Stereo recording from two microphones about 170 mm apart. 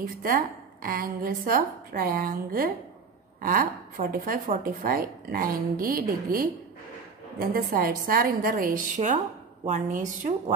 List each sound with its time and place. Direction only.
0.0 s a woman's voice: 60° right (ahead or behind)